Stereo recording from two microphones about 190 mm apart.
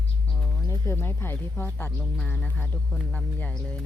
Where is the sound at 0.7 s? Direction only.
15° left (ahead or behind).